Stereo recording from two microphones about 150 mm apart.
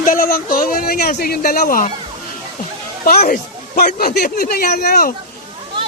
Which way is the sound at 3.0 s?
85° left.